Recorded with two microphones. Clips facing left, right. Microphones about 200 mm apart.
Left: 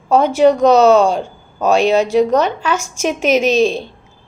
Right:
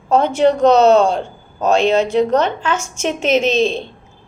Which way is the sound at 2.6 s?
25° right (ahead or behind).